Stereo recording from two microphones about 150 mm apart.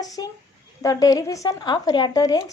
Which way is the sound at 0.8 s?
25° left (ahead or behind).